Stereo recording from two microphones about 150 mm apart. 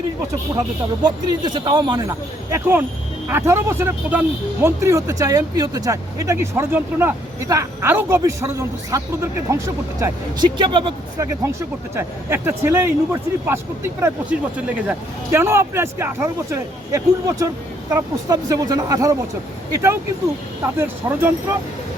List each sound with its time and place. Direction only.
1.0 s speech: 30° right (ahead or behind)
11.9 s speech: 15° right (ahead or behind)